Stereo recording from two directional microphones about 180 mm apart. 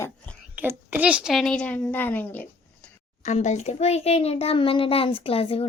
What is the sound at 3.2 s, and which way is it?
A child's voice, 40° left (ahead or behind).